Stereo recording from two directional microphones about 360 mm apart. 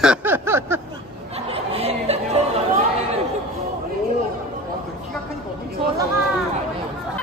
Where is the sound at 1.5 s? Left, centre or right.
Centre.